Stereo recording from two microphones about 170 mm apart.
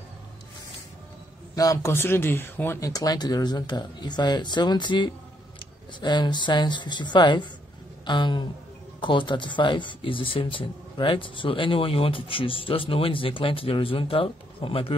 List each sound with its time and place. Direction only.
1.5 s speech: 20° left (ahead or behind)